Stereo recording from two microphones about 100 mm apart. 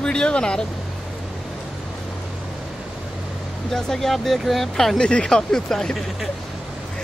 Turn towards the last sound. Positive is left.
turn(degrees=5)  # may be behind; listen again after turning